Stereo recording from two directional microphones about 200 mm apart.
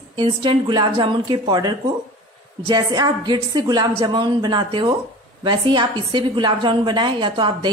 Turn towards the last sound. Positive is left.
turn(degrees=-25)  # may be behind; listen again after turning